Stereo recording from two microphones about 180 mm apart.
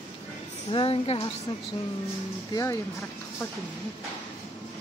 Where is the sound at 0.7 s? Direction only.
30° left (ahead or behind).